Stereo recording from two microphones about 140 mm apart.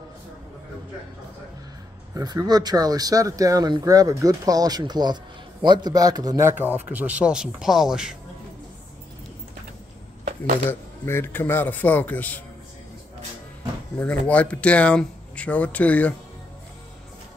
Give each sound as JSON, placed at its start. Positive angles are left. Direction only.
{"t": 2.1, "sound": "speech", "side_deg": -30}
{"t": 6.6, "sound": "speech", "side_deg": -10}
{"t": 10.7, "sound": "speech", "side_deg": 15}
{"t": 13.9, "sound": "speech", "side_deg": 10}